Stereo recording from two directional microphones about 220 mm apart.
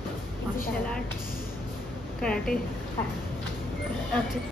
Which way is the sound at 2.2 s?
5° left (ahead or behind).